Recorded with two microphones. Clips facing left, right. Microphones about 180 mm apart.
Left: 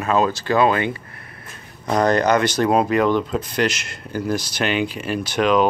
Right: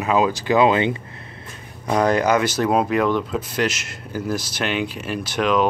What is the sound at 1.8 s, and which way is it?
Speech, 5° right (ahead or behind).